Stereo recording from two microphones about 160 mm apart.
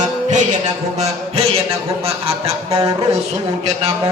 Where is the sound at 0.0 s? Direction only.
50° right (ahead or behind).